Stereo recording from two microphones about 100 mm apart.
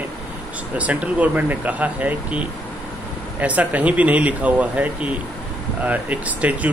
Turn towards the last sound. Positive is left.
turn(degrees=-15)  # may be behind; listen again after turning